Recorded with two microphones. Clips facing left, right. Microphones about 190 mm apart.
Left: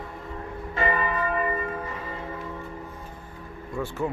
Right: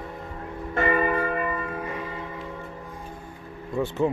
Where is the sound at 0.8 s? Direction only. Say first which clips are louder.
Right 3 dB; 50° right (ahead or behind).